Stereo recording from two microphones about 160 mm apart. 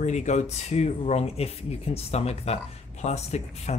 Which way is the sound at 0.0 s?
45° left (ahead or behind).